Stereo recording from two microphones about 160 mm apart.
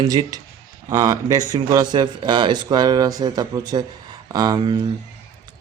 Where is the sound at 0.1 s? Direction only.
25° right (ahead or behind).